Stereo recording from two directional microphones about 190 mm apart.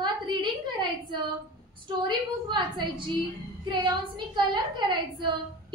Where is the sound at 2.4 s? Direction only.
25° right (ahead or behind).